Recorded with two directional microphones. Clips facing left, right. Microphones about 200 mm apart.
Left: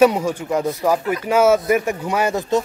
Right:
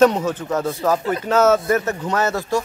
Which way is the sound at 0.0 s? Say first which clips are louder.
Even; 10° left (ahead or behind).